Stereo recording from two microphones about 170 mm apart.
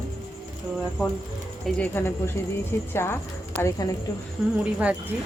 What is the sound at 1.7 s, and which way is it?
A woman's voice, 10° left (ahead or behind).